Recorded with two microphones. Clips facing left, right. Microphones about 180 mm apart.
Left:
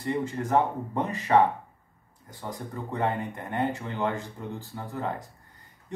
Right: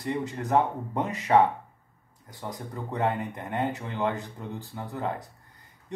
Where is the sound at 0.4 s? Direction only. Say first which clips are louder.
Right 1 dB; 5° right (ahead or behind).